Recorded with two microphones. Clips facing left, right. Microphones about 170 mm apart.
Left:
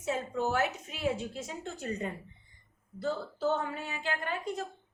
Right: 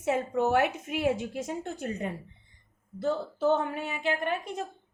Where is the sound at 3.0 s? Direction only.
55° right (ahead or behind).